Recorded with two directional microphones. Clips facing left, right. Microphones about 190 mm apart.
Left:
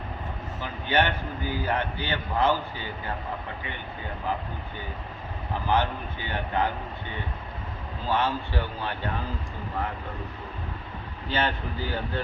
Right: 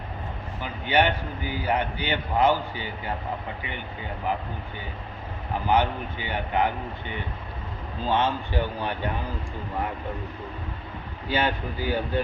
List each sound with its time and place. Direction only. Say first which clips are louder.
0.6 s a man's voice: right 2 dB; 15° right (ahead or behind)
5.6 s a man's voice: right 3 dB; 15° right (ahead or behind)
8.1 s a man's voice: right 2 dB; 20° right (ahead or behind)
11.3 s a man's voice: right 2 dB; 10° right (ahead or behind)